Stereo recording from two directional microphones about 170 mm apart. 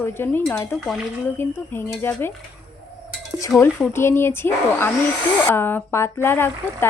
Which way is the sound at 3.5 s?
15° left (ahead or behind).